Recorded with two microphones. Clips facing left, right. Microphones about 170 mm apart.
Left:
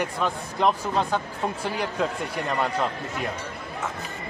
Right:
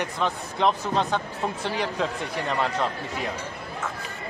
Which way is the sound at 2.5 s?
5° left (ahead or behind).